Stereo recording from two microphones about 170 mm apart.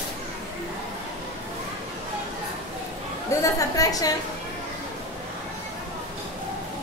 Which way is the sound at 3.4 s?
20° left (ahead or behind).